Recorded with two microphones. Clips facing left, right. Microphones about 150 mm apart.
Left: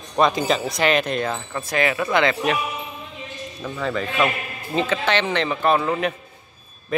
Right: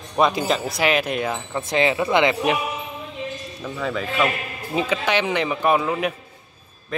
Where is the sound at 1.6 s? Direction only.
25° right (ahead or behind).